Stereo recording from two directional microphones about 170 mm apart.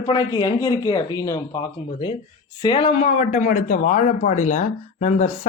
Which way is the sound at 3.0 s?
45° left (ahead or behind).